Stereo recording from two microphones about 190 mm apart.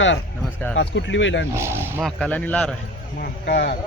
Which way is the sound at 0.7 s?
80° left.